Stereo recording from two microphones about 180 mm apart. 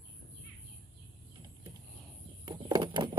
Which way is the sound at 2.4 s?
25° right (ahead or behind).